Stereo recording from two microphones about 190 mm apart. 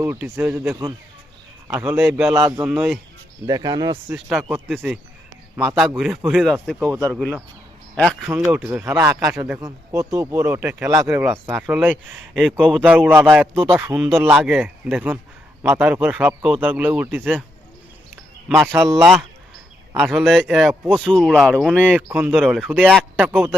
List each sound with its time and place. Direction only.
0.0 s speech: 10° right (ahead or behind)
3.4 s a man's voice: 20° right (ahead or behind)
4.1 s speech: 5° right (ahead or behind)
8.3 s speech: 10° right (ahead or behind)
18.4 s speech: 5° right (ahead or behind)
18.7 s speech: 15° right (ahead or behind)
20.0 s speech: centre (ahead or behind)